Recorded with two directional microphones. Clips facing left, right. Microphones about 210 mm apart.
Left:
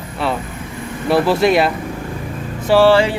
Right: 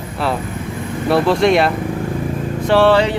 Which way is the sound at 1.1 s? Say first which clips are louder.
Even; 5° left (ahead or behind).